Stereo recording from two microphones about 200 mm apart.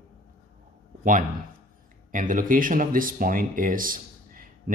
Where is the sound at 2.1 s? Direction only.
40° right (ahead or behind).